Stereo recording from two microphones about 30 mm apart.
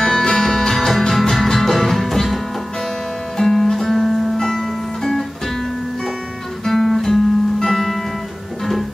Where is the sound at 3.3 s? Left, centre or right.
Centre.